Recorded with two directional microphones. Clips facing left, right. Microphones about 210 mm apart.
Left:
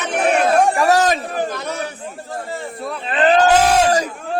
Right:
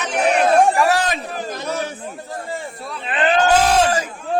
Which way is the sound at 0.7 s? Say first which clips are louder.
Left 3 dB; 40° left (ahead or behind).